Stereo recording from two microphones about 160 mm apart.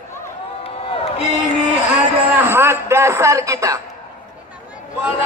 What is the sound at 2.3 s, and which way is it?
Speech, 15° right (ahead or behind).